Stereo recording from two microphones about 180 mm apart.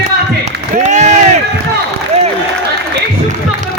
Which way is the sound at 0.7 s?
40° right (ahead or behind).